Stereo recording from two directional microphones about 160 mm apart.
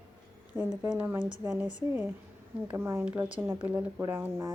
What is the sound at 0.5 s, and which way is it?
Speech, 10° right (ahead or behind).